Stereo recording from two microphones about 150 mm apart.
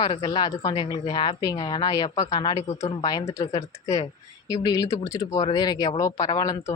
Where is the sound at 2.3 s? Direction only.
30° left (ahead or behind).